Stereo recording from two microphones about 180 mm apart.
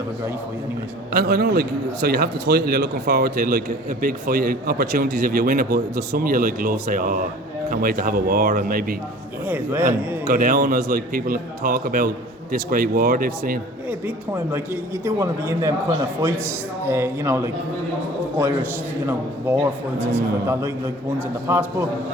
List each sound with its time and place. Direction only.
1.1 s a man's voice: 60° right (ahead or behind)
9.5 s a man's voice: 10° right (ahead or behind)
10.2 s a man's voice: 50° right (ahead or behind)
14.5 s a man's voice: 15° right (ahead or behind)
16.8 s a man's voice: 15° right (ahead or behind)